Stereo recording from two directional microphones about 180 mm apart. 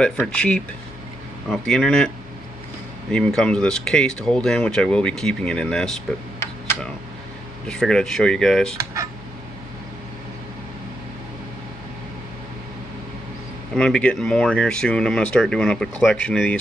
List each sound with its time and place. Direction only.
0.4 s speech: 5° left (ahead or behind)
3.1 s speech: 5° left (ahead or behind)
7.6 s speech: 5° left (ahead or behind)
8.7 s speech: 20° right (ahead or behind)
13.7 s speech: 5° left (ahead or behind)